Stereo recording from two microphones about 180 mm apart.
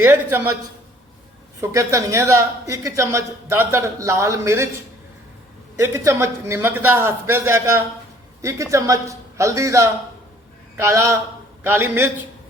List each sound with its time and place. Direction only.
0.0 s a woman's voice: 15° right (ahead or behind)
1.6 s a woman's voice: 15° right (ahead or behind)
5.7 s a woman's voice: 15° right (ahead or behind)